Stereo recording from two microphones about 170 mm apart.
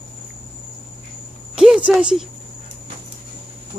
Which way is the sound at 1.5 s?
5° right (ahead or behind).